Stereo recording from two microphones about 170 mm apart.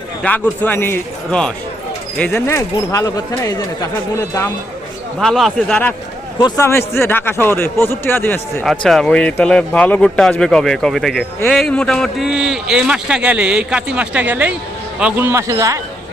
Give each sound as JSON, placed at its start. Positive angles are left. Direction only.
{"t": 0.2, "sound": "a man's voice", "side_deg": 10}
{"t": 5.2, "sound": "a man's voice", "side_deg": 0}
{"t": 6.4, "sound": "a man's voice", "side_deg": 15}